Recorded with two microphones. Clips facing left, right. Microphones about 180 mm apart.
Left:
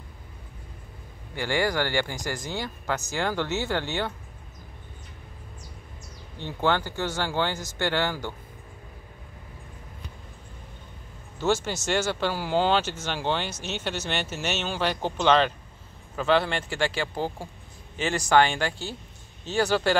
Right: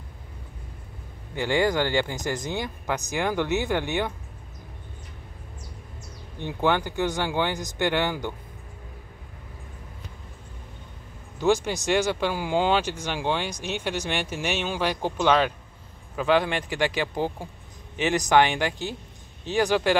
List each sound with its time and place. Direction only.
1.3 s speech: 20° right (ahead or behind)
6.3 s speech: 15° right (ahead or behind)
11.3 s speech: 15° right (ahead or behind)